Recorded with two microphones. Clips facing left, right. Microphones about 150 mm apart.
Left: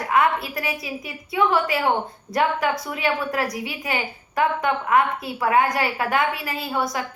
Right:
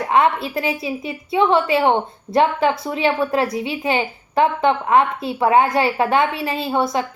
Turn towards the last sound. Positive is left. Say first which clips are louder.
# right 6 dB
turn(degrees=-25)  # may be behind; listen again after turning